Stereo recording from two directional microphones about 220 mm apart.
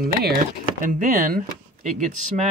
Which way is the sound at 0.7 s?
35° right (ahead or behind).